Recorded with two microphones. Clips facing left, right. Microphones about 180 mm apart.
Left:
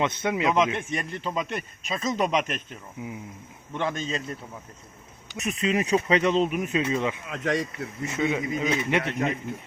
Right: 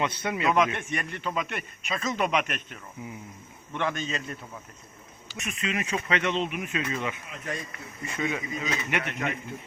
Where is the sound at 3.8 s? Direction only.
30° left (ahead or behind).